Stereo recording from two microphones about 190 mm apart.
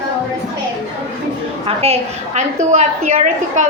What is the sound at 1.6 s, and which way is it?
A woman's voice, 30° right (ahead or behind).